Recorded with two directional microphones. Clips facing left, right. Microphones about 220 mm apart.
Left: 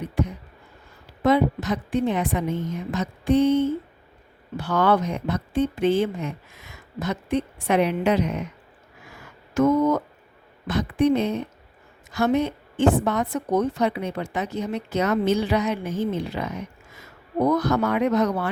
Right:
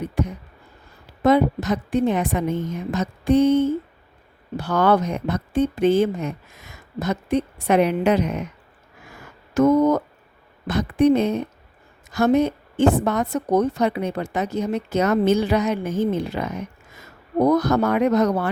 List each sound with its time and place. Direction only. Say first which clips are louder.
0.2 s a sound: even; 45° right (ahead or behind)
1.2 s a woman's voice: right 3 dB; 45° right (ahead or behind)
9.6 s a woman's voice: right 3 dB; 40° right (ahead or behind)